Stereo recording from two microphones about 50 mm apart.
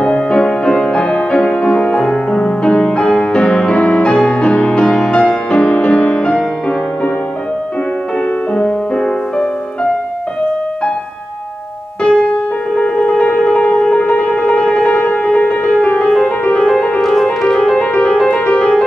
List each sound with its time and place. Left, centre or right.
0.0 s music: left
8.5 s music: centre
12.0 s music: centre
17.0 s music: centre
17.7 s music: left